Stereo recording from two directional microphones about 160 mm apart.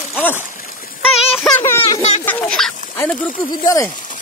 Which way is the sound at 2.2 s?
5° left (ahead or behind).